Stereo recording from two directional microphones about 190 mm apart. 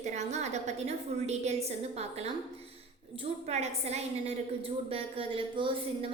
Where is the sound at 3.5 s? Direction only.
35° right (ahead or behind).